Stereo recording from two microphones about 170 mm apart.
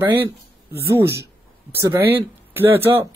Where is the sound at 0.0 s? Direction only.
15° right (ahead or behind).